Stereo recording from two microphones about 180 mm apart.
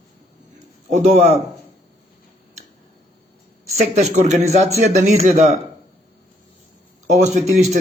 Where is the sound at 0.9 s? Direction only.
40° right (ahead or behind).